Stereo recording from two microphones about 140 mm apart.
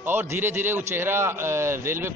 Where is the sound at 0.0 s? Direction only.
15° right (ahead or behind).